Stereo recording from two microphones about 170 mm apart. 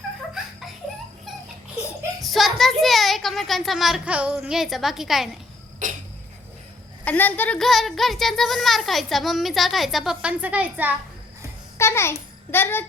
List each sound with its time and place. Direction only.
0.4 s laughter: 5° right (ahead or behind)
2.2 s a child's voice: centre (ahead or behind)
5.8 s a sound: 50° right (ahead or behind)
7.0 s speech: 10° left (ahead or behind); by 10.9 s 10° right (ahead or behind)
11.8 s a child's voice: 15° left (ahead or behind)